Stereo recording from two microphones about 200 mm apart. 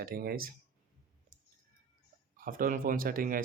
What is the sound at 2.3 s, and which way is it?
Speech, 45° right (ahead or behind).